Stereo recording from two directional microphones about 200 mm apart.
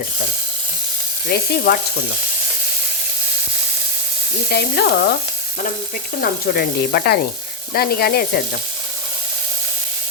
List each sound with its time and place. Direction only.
1.3 s sizzle: 50° left (ahead or behind)
4.5 s sizzle: 50° left (ahead or behind)
6.5 s sizzle: 50° left (ahead or behind)